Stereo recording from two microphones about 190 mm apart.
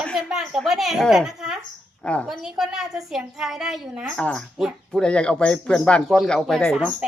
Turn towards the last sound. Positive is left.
turn(degrees=0)  # may be behind; listen again after turning